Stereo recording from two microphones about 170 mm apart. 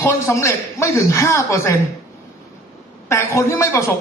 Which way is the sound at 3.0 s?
15° left (ahead or behind).